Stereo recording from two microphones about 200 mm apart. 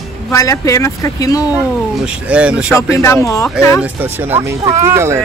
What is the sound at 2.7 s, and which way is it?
Speech, 15° left (ahead or behind).